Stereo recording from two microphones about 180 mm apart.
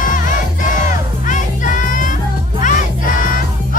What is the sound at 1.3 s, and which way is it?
Music, 45° left (ahead or behind).